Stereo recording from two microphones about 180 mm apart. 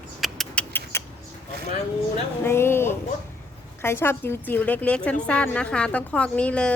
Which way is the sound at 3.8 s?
15° left (ahead or behind).